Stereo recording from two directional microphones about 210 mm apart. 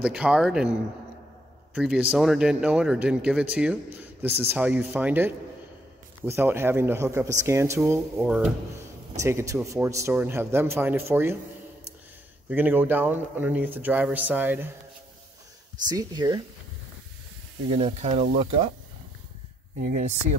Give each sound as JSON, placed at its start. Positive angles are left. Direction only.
{"t": 0.0, "sound": "speech", "side_deg": -5}
{"t": 9.2, "sound": "speech", "side_deg": -15}
{"t": 12.4, "sound": "speech", "side_deg": -10}
{"t": 15.9, "sound": "speech", "side_deg": -20}
{"t": 17.6, "sound": "speech", "side_deg": -25}
{"t": 19.8, "sound": "speech", "side_deg": -40}